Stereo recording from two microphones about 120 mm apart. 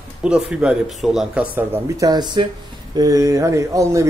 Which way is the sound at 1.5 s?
20° right (ahead or behind).